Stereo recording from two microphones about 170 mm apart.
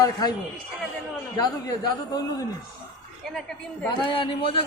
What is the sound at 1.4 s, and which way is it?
Speech, 25° left (ahead or behind).